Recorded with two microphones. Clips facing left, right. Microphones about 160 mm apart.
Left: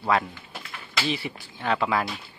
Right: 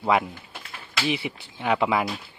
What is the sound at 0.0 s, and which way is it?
A man's voice, 10° right (ahead or behind).